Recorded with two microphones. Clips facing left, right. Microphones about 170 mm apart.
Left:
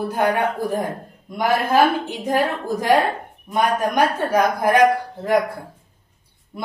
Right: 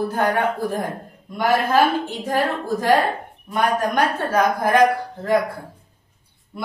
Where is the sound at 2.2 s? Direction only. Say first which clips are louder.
Left 2 dB; 15° left (ahead or behind).